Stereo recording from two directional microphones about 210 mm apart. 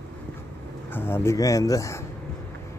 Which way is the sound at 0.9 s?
10° left (ahead or behind).